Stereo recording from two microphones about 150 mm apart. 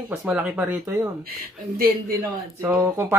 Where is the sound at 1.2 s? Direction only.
75° right (ahead or behind).